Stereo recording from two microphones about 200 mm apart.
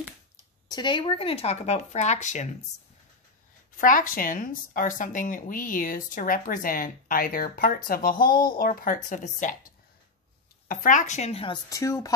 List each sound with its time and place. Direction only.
0.7 s speech: 20° left (ahead or behind)
3.7 s a woman's voice: 45° left (ahead or behind)
10.7 s speech: 40° left (ahead or behind); by 12.1 s 15° left (ahead or behind)